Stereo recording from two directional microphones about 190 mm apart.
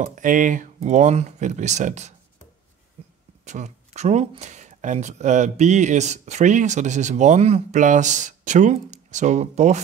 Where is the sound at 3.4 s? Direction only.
40° right (ahead or behind).